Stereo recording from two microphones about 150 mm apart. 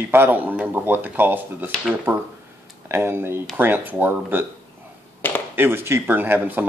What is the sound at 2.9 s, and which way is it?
Speech, 15° right (ahead or behind).